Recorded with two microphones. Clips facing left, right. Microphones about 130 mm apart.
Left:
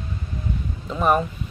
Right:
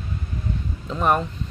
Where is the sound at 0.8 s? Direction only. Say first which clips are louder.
Left 1 dB; 5° left (ahead or behind).